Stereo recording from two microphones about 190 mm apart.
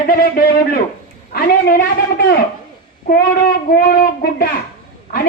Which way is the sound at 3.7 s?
50° left (ahead or behind).